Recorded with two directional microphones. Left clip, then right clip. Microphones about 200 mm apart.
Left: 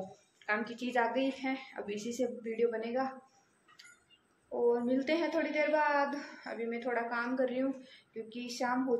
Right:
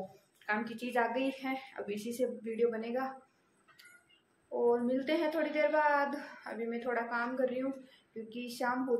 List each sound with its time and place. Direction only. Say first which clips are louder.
0.5 s a woman's voice: left 1 dB; 5° right (ahead or behind)
4.5 s a woman's voice: even; 5° right (ahead or behind)